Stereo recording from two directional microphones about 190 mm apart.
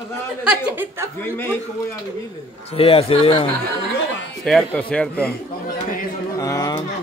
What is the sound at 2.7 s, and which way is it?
Speech, 30° left (ahead or behind).